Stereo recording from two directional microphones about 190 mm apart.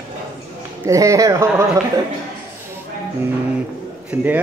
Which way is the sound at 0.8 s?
15° right (ahead or behind).